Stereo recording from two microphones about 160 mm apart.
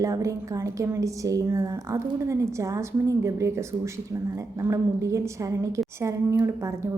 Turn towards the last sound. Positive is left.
turn(degrees=-20)  # may be behind; listen again after turning